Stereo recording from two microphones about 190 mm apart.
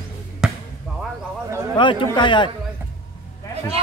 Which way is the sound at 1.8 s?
25° left (ahead or behind).